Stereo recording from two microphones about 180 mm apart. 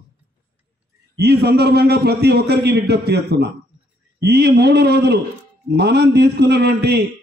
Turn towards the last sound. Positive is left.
turn(degrees=-65)  # may be behind; listen again after turning